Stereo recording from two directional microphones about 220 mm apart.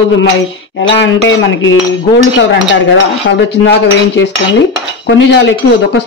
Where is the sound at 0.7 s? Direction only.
55° left (ahead or behind).